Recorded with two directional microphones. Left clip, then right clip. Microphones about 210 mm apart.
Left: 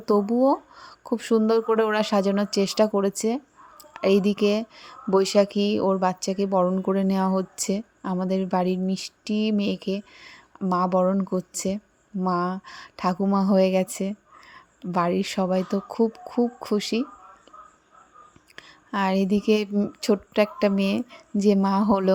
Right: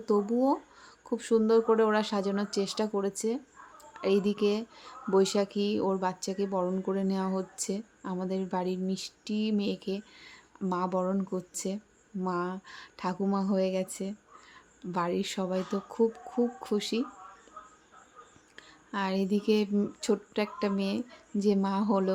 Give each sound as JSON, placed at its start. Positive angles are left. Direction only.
{"t": 0.0, "sound": "speech", "side_deg": 30}
{"t": 18.5, "sound": "speech", "side_deg": 30}